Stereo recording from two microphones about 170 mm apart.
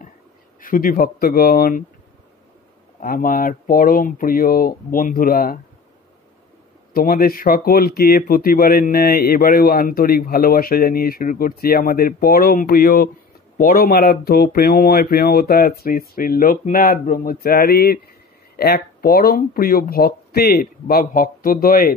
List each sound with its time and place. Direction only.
0.6 s speech: 55° left (ahead or behind)
3.0 s speech: 55° left (ahead or behind)
6.9 s speech: 60° left (ahead or behind)